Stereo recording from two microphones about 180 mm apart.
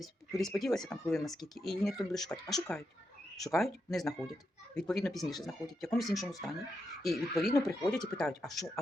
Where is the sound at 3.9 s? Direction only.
Centre (ahead or behind).